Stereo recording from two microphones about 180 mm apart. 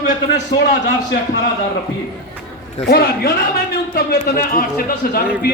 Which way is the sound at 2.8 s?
70° left (ahead or behind).